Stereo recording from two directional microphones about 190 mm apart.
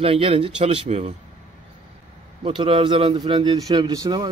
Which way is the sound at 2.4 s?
30° right (ahead or behind).